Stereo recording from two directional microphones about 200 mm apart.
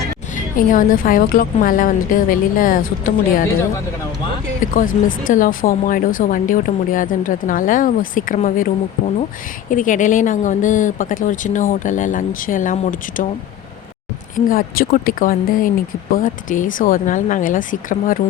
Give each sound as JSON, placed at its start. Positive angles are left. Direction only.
{"t": 0.3, "sound": "speech", "side_deg": 45}
{"t": 4.6, "sound": "speech", "side_deg": 40}
{"t": 14.3, "sound": "speech", "side_deg": 45}